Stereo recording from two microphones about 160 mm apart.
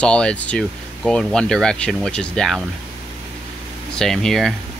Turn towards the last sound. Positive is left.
turn(degrees=0)  # may be behind; listen again after turning